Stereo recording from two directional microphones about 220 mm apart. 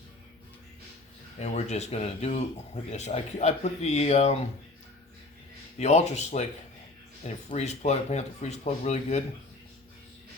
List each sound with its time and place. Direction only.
1.4 s speech: 30° left (ahead or behind)
5.8 s speech: 30° left (ahead or behind)